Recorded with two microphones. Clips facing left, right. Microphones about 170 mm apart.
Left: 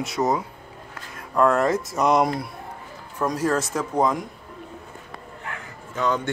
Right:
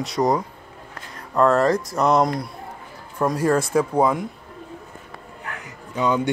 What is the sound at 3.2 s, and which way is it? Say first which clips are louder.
Speech: right 3 dB; 10° right (ahead or behind).